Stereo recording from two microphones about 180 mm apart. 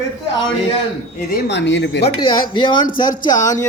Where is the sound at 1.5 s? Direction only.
85° left.